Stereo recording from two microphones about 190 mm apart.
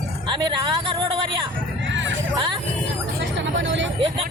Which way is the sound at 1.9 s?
80° right.